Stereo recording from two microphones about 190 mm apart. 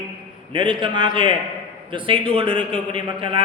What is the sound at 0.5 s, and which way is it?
A man's voice, 25° right (ahead or behind).